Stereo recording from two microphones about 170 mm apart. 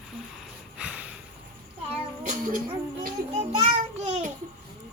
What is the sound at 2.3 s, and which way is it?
Music, 50° right (ahead or behind).